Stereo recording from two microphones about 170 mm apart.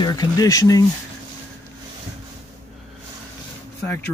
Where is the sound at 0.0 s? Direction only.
25° left (ahead or behind).